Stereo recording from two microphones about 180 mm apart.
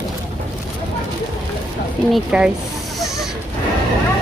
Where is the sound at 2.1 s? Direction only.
5° right (ahead or behind).